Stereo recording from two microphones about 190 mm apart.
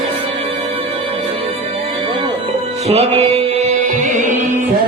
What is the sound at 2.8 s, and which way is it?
Music, 35° right (ahead or behind).